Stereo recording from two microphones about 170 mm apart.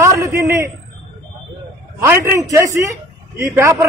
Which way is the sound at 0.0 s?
15° right (ahead or behind).